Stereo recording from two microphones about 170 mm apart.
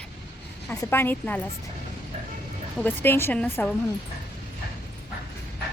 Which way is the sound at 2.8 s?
10° left (ahead or behind).